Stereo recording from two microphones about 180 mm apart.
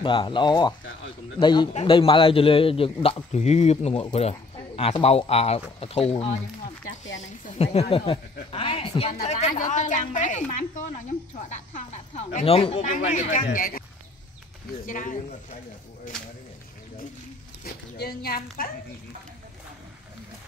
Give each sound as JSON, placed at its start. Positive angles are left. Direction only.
{"t": 0.0, "sound": "a woman's voice", "side_deg": 30}
{"t": 12.8, "sound": "speech", "side_deg": 45}
{"t": 14.9, "sound": "speech", "side_deg": 45}
{"t": 16.1, "sound": "speech", "side_deg": 5}
{"t": 17.9, "sound": "speech", "side_deg": 60}